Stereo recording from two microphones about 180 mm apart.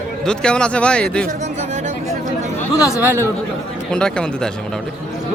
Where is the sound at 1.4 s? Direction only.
40° right (ahead or behind).